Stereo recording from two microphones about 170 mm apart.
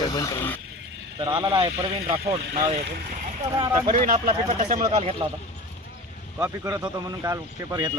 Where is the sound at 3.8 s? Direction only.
50° right (ahead or behind).